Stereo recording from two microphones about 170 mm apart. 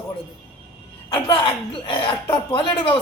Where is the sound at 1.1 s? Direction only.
25° left (ahead or behind).